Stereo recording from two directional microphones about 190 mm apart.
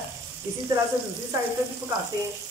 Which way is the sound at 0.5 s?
15° right (ahead or behind).